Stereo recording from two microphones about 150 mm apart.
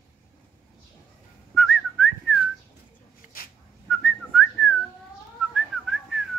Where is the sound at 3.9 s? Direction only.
5° left (ahead or behind).